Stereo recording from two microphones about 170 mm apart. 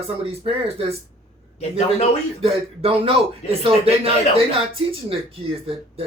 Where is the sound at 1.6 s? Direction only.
40° left (ahead or behind).